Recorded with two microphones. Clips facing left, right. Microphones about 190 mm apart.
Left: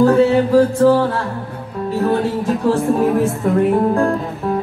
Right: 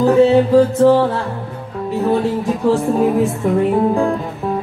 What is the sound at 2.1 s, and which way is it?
Speech, centre (ahead or behind).